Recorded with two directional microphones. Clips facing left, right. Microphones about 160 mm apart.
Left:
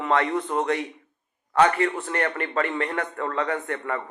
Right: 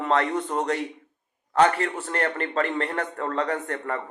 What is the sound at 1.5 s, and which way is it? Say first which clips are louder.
A man's voice: left 1 dB; 40° right (ahead or behind).